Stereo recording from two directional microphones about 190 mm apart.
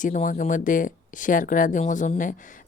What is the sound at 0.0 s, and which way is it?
Speech, 40° left (ahead or behind).